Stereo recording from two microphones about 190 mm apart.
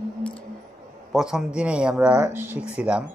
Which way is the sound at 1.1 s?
5° right (ahead or behind).